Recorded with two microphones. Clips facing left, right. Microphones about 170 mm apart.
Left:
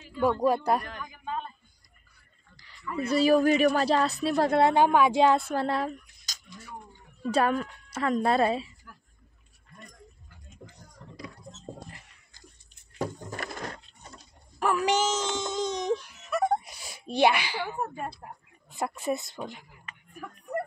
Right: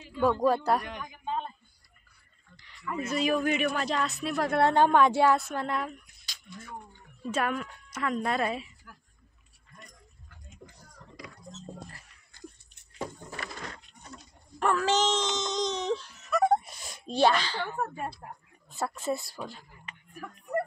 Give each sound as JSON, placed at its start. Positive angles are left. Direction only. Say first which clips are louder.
{"t": 0.1, "sound": "speech", "louder": "even", "side_deg": 10}
{"t": 0.8, "sound": "a sound", "louder": "right 1 dB", "side_deg": -20}
{"t": 2.5, "sound": "a man's voice", "louder": "left 1 dB", "side_deg": 35}
{"t": 4.6, "sound": "speech", "louder": "right 1 dB", "side_deg": 10}
{"t": 5.2, "sound": "a man's voice", "louder": "left 2 dB", "side_deg": 30}
{"t": 10.8, "sound": "power windows", "louder": "left 5 dB", "side_deg": 25}
{"t": 12.9, "sound": "a sound", "louder": "left 4 dB", "side_deg": 40}
{"t": 14.8, "sound": "baby cry", "louder": "left 1 dB", "side_deg": 10}
{"t": 16.3, "sound": "whimper", "louder": "right 2 dB", "side_deg": 0}
{"t": 18.7, "sound": "speech", "louder": "left 1 dB", "side_deg": 15}